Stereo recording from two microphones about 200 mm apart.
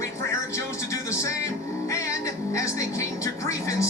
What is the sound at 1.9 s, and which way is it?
Music, 15° left (ahead or behind).